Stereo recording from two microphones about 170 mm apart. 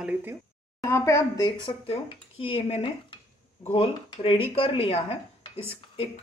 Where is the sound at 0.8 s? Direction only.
20° left (ahead or behind).